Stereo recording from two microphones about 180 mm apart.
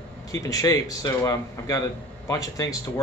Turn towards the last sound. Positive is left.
turn(degrees=20)  # may be behind; listen again after turning